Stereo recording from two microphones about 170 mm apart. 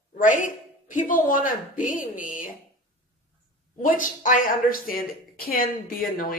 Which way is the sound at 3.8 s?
50° left (ahead or behind).